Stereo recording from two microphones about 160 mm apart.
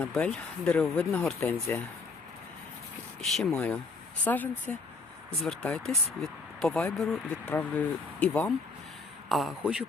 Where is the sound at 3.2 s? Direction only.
Centre (ahead or behind).